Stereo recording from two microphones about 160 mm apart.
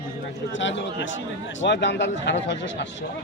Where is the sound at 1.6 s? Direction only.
90° left.